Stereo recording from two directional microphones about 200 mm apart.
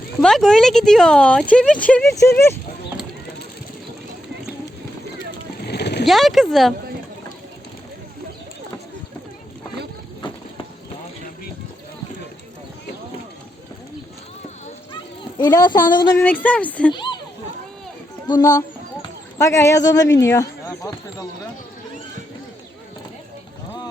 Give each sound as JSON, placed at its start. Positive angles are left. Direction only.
{"t": 0.2, "sound": "speech", "side_deg": 5}
{"t": 5.6, "sound": "boat", "side_deg": 55}
{"t": 6.1, "sound": "speech", "side_deg": 0}
{"t": 15.4, "sound": "speech", "side_deg": 20}
{"t": 16.2, "sound": "speech", "side_deg": 10}
{"t": 16.9, "sound": "speech", "side_deg": 25}
{"t": 19.4, "sound": "speech", "side_deg": 15}